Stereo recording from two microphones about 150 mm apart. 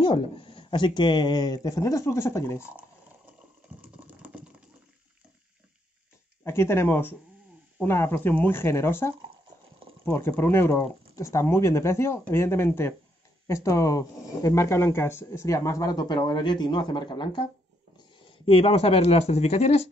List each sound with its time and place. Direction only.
0.0 s speech: 35° left (ahead or behind); by 2.6 s 20° left (ahead or behind)
3.8 s computer keyboard: 10° right (ahead or behind)
6.4 s speech: 15° left (ahead or behind); by 19.9 s 45° left (ahead or behind)